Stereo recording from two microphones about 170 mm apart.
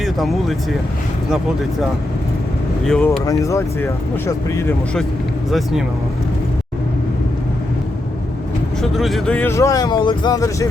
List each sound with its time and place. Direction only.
0.0 s speech: centre (ahead or behind)
2.8 s speech: 5° left (ahead or behind)
3.2 s speech: 20° left (ahead or behind)
5.5 s speech: centre (ahead or behind)
8.8 s speech: centre (ahead or behind); by 10.7 s 20° left (ahead or behind)